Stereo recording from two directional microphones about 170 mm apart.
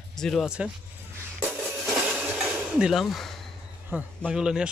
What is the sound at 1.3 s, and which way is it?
Music, 10° right (ahead or behind).